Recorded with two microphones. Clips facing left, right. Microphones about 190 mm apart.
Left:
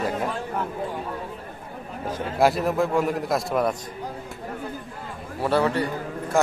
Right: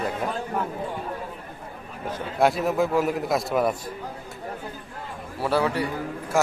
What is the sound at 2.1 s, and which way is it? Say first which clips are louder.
Speech: left 1 dB; 5° left (ahead or behind).